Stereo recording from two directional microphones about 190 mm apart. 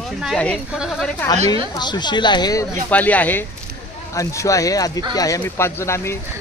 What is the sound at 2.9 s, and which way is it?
Speech, 10° left (ahead or behind).